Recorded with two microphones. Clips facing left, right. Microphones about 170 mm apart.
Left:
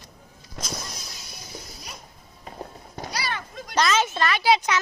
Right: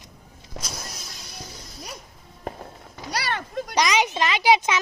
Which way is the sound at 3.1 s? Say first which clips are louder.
Right 5 dB; 70° right (ahead or behind).